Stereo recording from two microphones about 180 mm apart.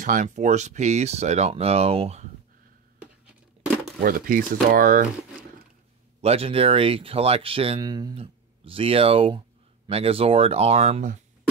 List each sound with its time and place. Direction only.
0.0 s speech: 45° right (ahead or behind)
4.0 s speech: 50° right (ahead or behind)
6.2 s speech: 35° right (ahead or behind)